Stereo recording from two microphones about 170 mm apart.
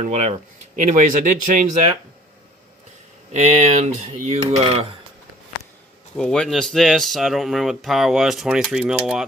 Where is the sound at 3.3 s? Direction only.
40° right (ahead or behind).